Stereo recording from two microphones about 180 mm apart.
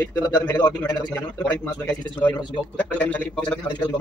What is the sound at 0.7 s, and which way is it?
Speech, 20° left (ahead or behind).